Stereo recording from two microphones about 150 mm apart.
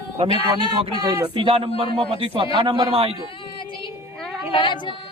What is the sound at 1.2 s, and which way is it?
Speech, 35° right (ahead or behind).